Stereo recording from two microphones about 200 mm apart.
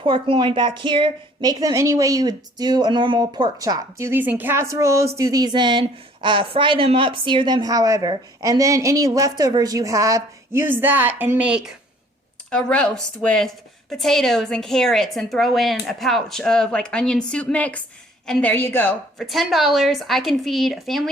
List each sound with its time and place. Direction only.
0.0 s a woman's voice: 25° right (ahead or behind); by 21.1 s centre (ahead or behind)